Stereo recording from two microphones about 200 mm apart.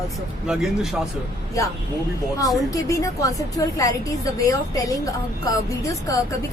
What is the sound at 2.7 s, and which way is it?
A woman's voice, 15° left (ahead or behind).